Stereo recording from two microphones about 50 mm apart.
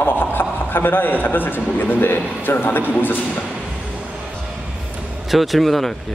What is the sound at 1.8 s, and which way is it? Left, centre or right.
A man's voice, left.